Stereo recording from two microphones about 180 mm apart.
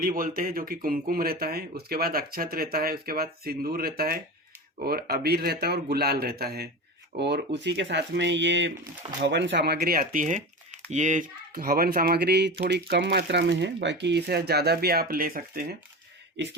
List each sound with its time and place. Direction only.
0.0 s speech: 50° right (ahead or behind); by 8.7 s 85° right
9.2 s speech: 75° right (ahead or behind); by 15.6 s 50° right (ahead or behind)